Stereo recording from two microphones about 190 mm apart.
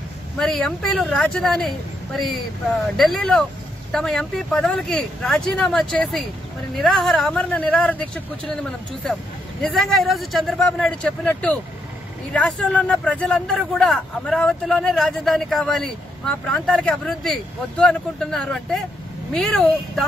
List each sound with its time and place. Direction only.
0.4 s speech: 5° left (ahead or behind)
9.6 s speech: centre (ahead or behind)